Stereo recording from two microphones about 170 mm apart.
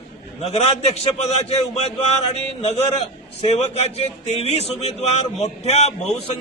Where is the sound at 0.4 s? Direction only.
40° left (ahead or behind).